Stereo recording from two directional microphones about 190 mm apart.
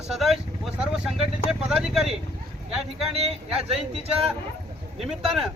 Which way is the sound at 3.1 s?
30° right (ahead or behind).